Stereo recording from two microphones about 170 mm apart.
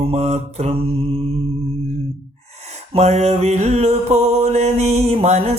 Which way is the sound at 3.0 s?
40° right (ahead or behind).